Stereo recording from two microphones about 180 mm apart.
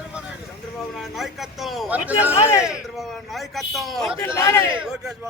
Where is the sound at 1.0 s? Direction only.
Centre (ahead or behind).